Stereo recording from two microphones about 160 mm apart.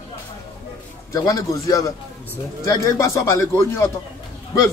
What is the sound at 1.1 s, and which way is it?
Speech, 20° left (ahead or behind).